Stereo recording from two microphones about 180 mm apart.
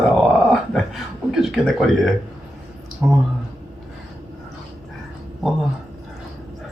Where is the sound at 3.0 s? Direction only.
10° right (ahead or behind).